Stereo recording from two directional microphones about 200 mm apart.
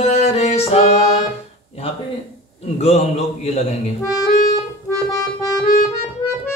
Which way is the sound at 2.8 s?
30° left (ahead or behind).